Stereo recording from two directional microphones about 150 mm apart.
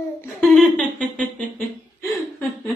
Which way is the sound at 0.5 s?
Centre (ahead or behind).